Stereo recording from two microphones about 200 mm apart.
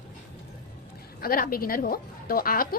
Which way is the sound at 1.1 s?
45° left (ahead or behind).